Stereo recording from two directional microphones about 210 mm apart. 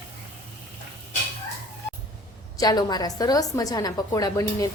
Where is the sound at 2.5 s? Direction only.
20° left (ahead or behind).